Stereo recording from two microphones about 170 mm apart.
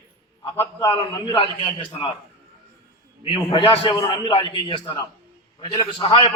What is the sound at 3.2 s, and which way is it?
A man's voice, 30° left (ahead or behind).